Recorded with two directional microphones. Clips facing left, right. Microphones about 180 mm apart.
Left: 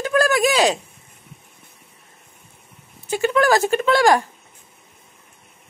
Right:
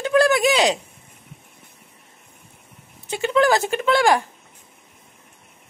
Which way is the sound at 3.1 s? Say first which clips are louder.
Left 1 dB; 20° right (ahead or behind).